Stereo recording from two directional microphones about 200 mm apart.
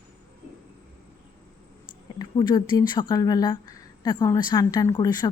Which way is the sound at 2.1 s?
20° left (ahead or behind).